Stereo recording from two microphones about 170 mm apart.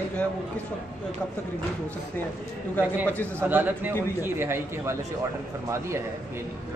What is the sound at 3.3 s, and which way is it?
A man's voice, 10° right (ahead or behind).